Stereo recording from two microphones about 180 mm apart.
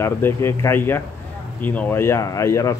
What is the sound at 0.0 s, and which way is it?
Speech, 15° left (ahead or behind).